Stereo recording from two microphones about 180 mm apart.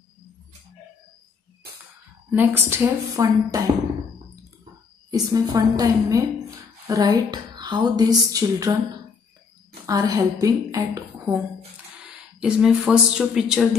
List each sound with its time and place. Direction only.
2.3 s speech: 10° right (ahead or behind)
5.1 s speech: 20° right (ahead or behind)
9.8 s speech: 20° right (ahead or behind); by 13.7 s 5° right (ahead or behind)